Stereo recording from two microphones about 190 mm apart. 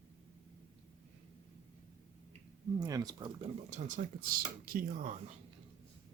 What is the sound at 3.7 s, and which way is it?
Speech, 40° right (ahead or behind).